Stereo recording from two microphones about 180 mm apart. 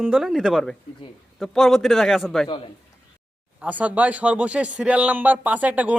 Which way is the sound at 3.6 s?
10° right (ahead or behind).